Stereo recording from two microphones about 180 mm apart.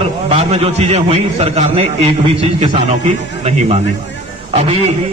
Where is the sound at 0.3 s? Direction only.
35° right (ahead or behind).